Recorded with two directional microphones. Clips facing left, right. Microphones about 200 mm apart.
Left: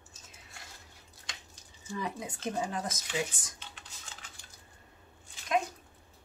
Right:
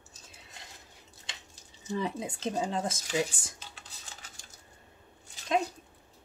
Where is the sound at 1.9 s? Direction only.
25° right (ahead or behind).